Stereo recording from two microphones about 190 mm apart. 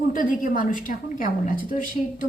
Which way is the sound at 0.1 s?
45° left (ahead or behind).